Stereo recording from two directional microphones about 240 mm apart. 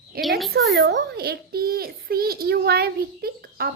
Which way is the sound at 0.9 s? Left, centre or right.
Right.